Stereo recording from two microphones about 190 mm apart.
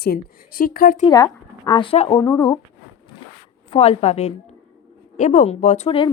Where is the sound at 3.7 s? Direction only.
30° left (ahead or behind).